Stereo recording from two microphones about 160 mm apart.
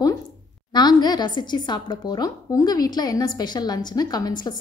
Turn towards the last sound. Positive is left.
turn(degrees=25)  # may be behind; listen again after turning